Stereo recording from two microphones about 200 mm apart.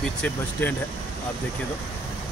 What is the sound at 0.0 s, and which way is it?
Speech, 5° left (ahead or behind).